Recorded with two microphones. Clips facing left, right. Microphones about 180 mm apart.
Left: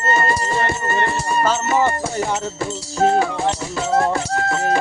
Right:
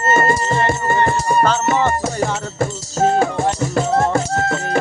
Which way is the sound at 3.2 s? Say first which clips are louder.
Right 3 dB; 45° right (ahead or behind).